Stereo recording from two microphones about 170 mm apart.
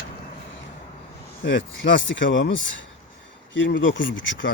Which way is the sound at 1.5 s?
90° left.